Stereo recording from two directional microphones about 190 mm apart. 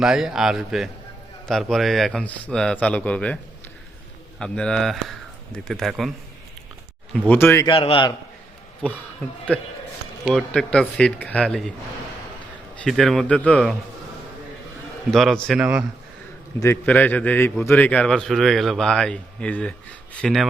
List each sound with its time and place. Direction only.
0.0 s a man's voice: centre (ahead or behind)
4.4 s a man's voice: 5° left (ahead or behind)
7.1 s speech: 10° left (ahead or behind)
7.7 s a man's voice: 30° left (ahead or behind)
8.8 s a man's voice: 5° left (ahead or behind)
10.3 s a man's voice: 5° left (ahead or behind)
12.8 s a man's voice: centre (ahead or behind)
15.1 s a man's voice: centre (ahead or behind)
16.6 s a man's voice: 10° left (ahead or behind)